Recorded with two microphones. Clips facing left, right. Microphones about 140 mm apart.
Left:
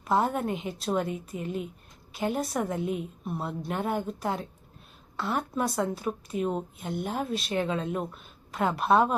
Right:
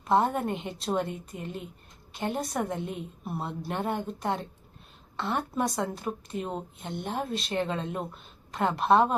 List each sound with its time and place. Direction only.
0.0 s a woman's voice: centre (ahead or behind)